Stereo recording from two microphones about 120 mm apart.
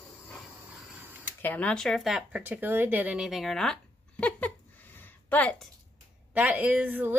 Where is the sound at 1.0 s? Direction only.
15° right (ahead or behind).